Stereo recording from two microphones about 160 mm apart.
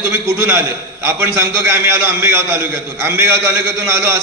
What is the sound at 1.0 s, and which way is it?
A man's voice, 15° right (ahead or behind).